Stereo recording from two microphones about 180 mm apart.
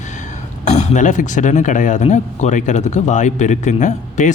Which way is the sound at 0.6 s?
40° left (ahead or behind).